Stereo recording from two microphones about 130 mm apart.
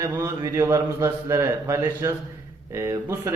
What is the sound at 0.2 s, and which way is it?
A man's voice, 25° right (ahead or behind).